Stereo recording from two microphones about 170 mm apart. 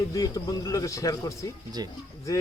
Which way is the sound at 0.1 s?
20° left (ahead or behind).